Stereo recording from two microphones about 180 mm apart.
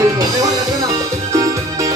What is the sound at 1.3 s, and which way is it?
Music, 20° right (ahead or behind).